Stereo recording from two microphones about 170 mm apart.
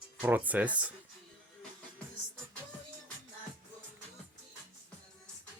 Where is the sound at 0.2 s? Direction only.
10° right (ahead or behind).